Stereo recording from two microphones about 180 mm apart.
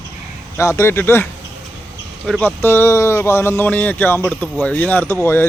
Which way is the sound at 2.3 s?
10° left (ahead or behind).